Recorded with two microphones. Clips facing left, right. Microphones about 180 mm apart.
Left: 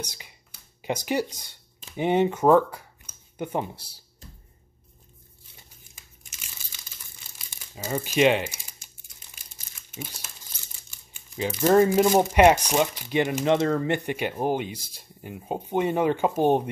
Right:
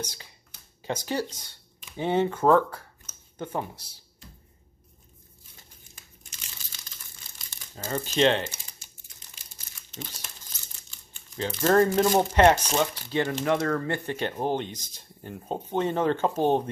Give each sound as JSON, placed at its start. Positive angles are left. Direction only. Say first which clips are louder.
{"t": 0.0, "sound": "speech", "louder": "right 1 dB", "side_deg": 15}
{"t": 7.3, "sound": "speech", "louder": "left 2 dB", "side_deg": 10}
{"t": 9.8, "sound": "crumpling", "louder": "left 2 dB", "side_deg": 10}
{"t": 10.8, "sound": "speech", "louder": "even", "side_deg": 10}